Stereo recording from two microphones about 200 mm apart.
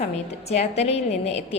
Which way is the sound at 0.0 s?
35° left (ahead or behind).